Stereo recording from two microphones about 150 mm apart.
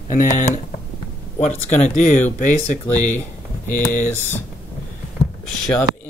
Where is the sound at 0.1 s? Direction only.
55° left (ahead or behind).